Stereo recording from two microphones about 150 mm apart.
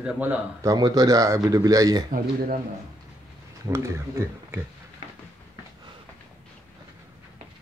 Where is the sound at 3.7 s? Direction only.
20° right (ahead or behind).